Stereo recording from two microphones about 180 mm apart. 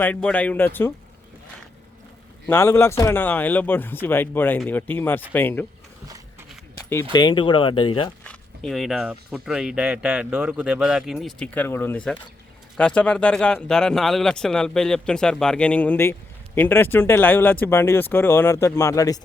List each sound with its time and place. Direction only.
0.0 s speech: 5° left (ahead or behind)
2.5 s speech: 15° left (ahead or behind)
7.1 s speech: 25° left (ahead or behind)
8.2 s speech: 5° left (ahead or behind)